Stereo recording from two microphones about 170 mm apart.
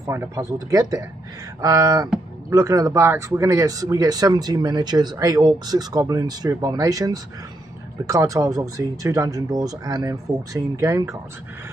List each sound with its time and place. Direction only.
0.0 s speech: 15° right (ahead or behind)